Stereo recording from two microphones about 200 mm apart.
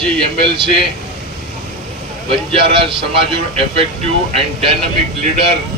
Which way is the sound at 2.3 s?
25° right (ahead or behind).